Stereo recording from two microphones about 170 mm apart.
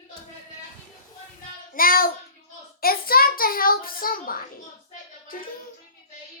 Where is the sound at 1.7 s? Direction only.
55° left (ahead or behind).